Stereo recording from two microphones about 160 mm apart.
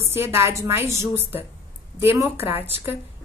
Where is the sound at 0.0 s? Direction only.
15° right (ahead or behind).